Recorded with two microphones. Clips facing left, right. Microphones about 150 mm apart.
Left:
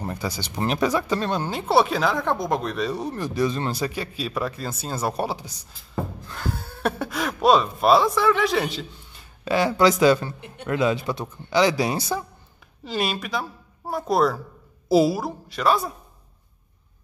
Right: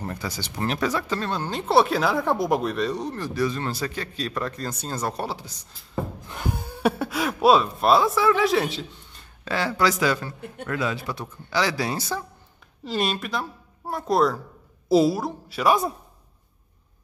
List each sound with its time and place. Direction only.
0.0 s speech: 15° left (ahead or behind)
1.5 s speech: 5° left (ahead or behind)
6.2 s speech: 20° right (ahead or behind); by 9.5 s 5° left (ahead or behind)
9.5 s a man's voice: 15° left (ahead or behind)
12.8 s speech: centre (ahead or behind)